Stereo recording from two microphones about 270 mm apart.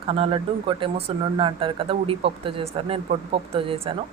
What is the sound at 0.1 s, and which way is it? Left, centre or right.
A woman's voice, centre.